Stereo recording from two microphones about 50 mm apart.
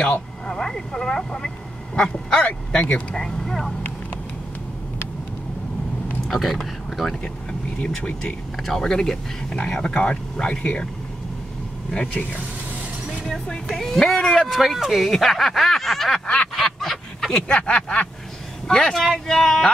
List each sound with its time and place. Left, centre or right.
0.5 s speech: centre
3.2 s speech: centre
6.2 s speech: centre
8.6 s speech: centre; by 10.8 s left
12.1 s speech: left
13.3 s speech: centre
16.5 s a sound: centre
17.5 s speech: left